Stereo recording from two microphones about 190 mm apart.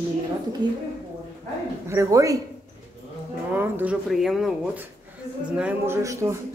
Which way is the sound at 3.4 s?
10° right (ahead or behind).